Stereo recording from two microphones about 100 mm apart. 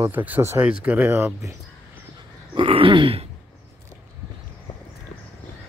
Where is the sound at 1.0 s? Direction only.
25° right (ahead or behind).